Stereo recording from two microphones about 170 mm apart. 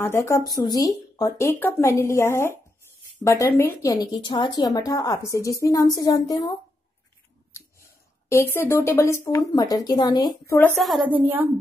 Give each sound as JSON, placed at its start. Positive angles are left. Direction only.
{"t": 0.0, "sound": "a woman's voice", "side_deg": 15}
{"t": 8.3, "sound": "speech", "side_deg": 15}
{"t": 11.1, "sound": "speech", "side_deg": -10}